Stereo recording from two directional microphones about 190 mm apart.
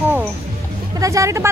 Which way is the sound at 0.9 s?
15° right (ahead or behind).